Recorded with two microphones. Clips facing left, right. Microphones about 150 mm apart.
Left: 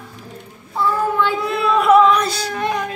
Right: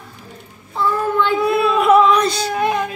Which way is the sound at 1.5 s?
10° right (ahead or behind).